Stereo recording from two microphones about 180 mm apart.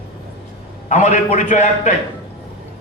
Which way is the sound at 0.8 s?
40° left (ahead or behind).